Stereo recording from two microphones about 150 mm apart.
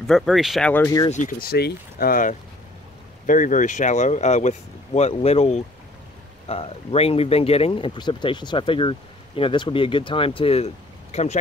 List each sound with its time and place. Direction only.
0.0 s speech: centre (ahead or behind)
1.4 s speech: 90° left; by 11.3 s 45° left (ahead or behind)